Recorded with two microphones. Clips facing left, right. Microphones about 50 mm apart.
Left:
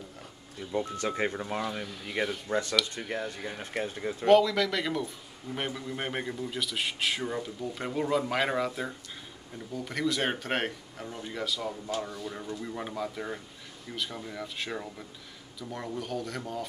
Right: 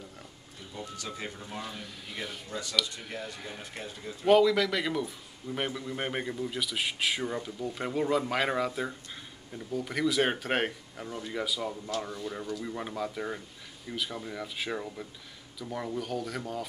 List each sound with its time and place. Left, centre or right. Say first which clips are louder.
0.7 s speech: left 9 dB; left
1.6 s a man's voice: left 6 dB; centre
3.7 s speech: left 8 dB; left
4.3 s a man's voice: even; centre